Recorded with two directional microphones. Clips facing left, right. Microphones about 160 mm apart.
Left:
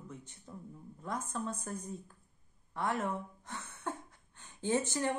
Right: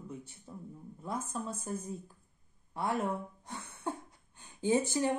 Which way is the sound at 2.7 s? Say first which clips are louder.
Right 2 dB; 10° right (ahead or behind).